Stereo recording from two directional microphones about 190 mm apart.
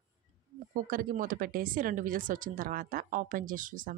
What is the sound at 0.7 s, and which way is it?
Speech, 50° right (ahead or behind).